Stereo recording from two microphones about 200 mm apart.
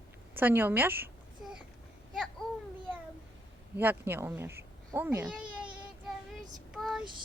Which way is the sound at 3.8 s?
10° right (ahead or behind).